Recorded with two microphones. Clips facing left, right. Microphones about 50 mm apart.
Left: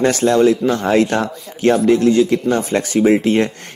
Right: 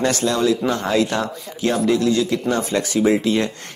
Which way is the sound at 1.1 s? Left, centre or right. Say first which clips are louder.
Left 4 dB; left.